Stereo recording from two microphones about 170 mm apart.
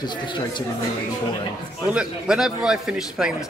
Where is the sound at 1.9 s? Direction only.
5° right (ahead or behind).